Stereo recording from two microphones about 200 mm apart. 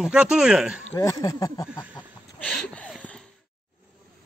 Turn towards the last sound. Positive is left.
turn(degrees=5)  # may be behind; listen again after turning